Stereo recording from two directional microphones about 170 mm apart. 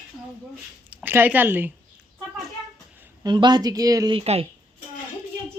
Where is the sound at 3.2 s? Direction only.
25° right (ahead or behind).